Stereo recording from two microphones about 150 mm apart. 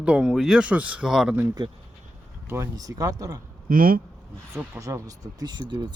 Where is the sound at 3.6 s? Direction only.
70° right (ahead or behind).